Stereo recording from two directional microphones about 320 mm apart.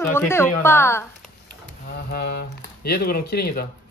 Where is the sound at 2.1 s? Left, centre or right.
Left.